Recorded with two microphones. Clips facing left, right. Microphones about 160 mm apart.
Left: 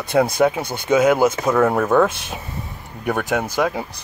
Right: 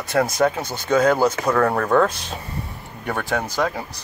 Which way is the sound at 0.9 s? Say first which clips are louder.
Left 2 dB; 10° left (ahead or behind).